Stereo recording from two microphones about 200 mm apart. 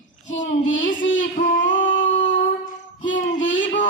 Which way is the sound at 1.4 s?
70° left (ahead or behind).